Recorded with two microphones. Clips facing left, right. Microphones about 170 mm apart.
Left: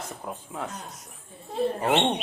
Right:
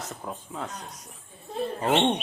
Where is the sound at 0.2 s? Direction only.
10° left (ahead or behind).